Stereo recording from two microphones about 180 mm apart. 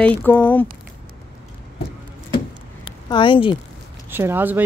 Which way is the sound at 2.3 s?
25° left (ahead or behind).